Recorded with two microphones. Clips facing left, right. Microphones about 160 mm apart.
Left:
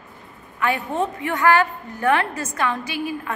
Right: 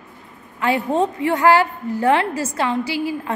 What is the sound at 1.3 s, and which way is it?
A woman's voice, 30° right (ahead or behind).